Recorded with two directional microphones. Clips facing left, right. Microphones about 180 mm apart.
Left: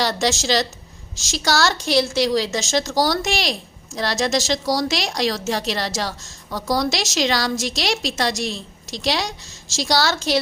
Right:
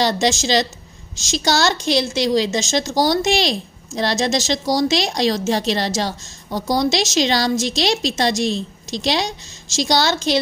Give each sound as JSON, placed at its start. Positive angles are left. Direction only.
{"t": 0.0, "sound": "a woman's voice", "side_deg": -20}